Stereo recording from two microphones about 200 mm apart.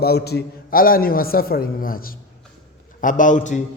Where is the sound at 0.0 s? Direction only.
55° left (ahead or behind).